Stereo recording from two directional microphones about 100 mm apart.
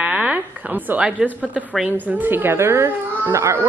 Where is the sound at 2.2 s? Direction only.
20° right (ahead or behind).